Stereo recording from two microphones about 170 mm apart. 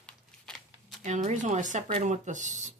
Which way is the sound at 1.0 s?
45° right (ahead or behind).